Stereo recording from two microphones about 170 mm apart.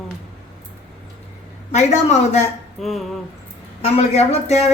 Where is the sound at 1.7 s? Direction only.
45° left (ahead or behind).